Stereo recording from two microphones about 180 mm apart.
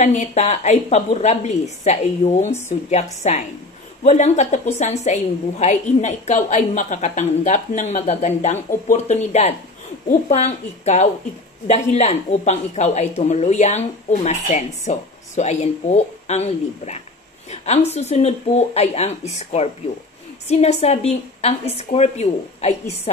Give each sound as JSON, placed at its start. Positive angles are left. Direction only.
{"t": 0.0, "sound": "a woman's voice", "side_deg": 40}